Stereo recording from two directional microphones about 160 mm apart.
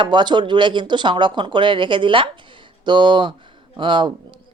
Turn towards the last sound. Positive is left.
turn(degrees=-30)  # may be behind; listen again after turning